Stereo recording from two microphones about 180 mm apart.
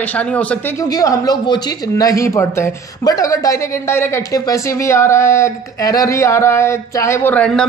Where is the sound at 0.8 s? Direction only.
20° left (ahead or behind).